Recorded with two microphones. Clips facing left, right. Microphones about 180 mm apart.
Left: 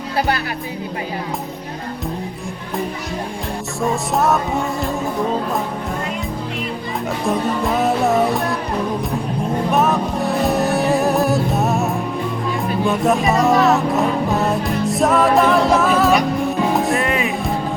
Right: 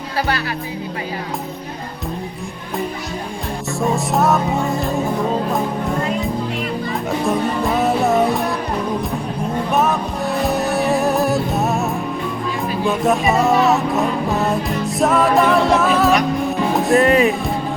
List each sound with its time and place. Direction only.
3.8 s music: centre (ahead or behind)
7.3 s music: centre (ahead or behind)
9.7 s music: centre (ahead or behind)
17.0 s speech: 40° right (ahead or behind)